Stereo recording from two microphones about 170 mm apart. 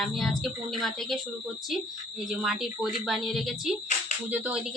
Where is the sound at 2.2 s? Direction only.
5° right (ahead or behind).